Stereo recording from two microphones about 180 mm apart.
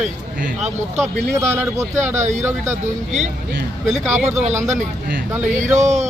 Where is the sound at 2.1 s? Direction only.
40° right (ahead or behind).